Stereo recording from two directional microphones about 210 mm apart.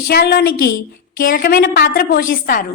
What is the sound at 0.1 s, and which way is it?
A woman's voice, 50° left (ahead or behind).